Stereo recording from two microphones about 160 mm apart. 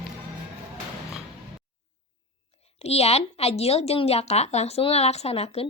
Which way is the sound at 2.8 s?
40° left (ahead or behind).